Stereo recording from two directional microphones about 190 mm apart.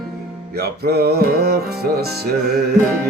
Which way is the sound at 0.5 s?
55° right (ahead or behind).